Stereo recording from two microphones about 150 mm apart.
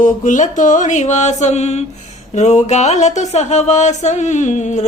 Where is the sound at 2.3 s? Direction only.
50° left (ahead or behind).